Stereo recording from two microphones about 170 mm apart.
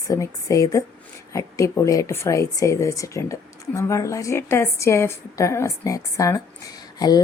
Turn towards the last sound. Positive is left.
turn(degrees=25)  # may be behind; listen again after turning